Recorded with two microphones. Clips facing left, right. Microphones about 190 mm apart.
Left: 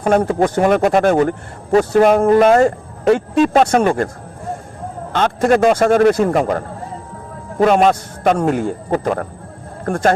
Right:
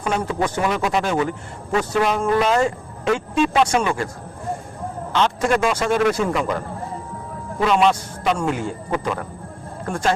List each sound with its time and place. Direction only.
0.0 s speech: 50° left (ahead or behind)
3.3 s speech: 45° left (ahead or behind)
5.1 s speech: 50° left (ahead or behind)